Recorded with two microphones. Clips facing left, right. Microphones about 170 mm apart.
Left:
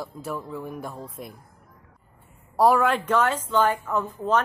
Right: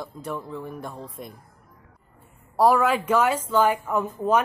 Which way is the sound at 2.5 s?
Centre (ahead or behind).